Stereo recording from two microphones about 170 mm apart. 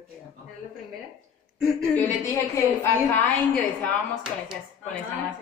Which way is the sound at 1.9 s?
15° left (ahead or behind).